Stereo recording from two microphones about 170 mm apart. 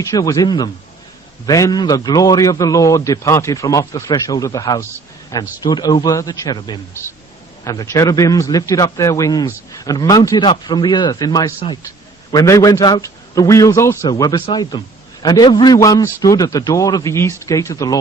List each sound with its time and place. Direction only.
0.0 s a man's voice: 20° left (ahead or behind)